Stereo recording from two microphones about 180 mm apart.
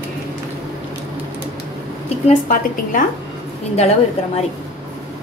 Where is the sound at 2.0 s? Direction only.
40° left (ahead or behind).